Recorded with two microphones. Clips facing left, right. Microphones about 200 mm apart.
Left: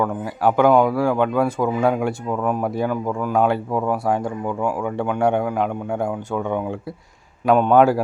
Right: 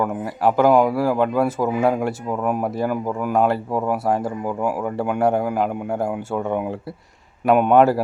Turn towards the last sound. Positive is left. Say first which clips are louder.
# even
turn(degrees=0)  # may be behind; listen again after turning